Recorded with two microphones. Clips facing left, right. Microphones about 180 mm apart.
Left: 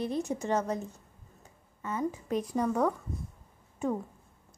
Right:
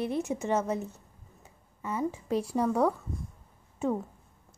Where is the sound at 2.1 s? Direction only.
30° right (ahead or behind).